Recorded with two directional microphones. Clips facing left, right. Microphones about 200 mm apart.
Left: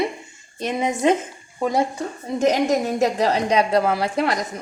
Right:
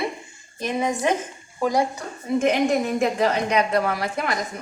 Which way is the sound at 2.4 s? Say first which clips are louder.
Left 1 dB; 40° left (ahead or behind).